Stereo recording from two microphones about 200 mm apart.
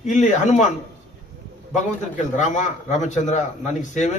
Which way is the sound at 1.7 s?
35° left (ahead or behind).